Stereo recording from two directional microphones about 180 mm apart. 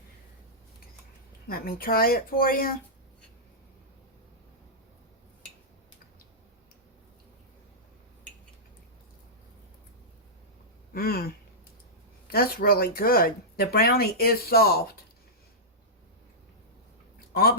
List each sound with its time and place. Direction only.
1.5 s speech: 55° left (ahead or behind)
10.9 s speech: 55° left (ahead or behind)
12.3 s speech: 55° left (ahead or behind)